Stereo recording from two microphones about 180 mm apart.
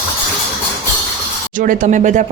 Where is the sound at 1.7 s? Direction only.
45° right (ahead or behind).